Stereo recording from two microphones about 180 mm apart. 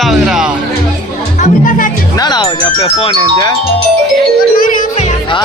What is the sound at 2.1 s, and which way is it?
Speech, 25° left (ahead or behind).